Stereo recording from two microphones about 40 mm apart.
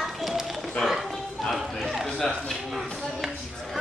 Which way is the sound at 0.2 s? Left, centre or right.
Centre.